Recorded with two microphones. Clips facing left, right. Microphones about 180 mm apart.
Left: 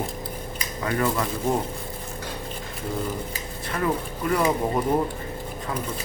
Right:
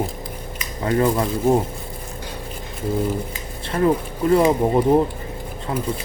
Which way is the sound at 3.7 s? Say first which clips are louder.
Right 7 dB; 30° right (ahead or behind).